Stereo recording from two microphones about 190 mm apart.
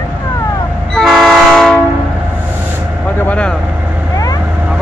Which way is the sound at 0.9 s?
Centre (ahead or behind).